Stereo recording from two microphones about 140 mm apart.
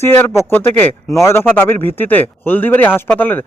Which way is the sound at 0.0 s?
15° left (ahead or behind).